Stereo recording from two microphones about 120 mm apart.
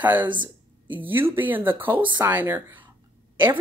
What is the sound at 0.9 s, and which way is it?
Speech, 15° right (ahead or behind).